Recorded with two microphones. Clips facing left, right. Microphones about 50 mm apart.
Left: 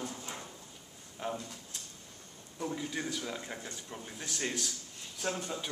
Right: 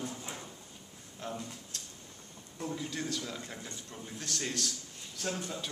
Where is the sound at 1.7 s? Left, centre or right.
Centre.